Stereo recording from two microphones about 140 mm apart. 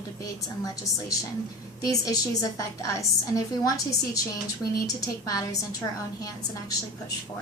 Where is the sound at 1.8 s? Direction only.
25° left (ahead or behind).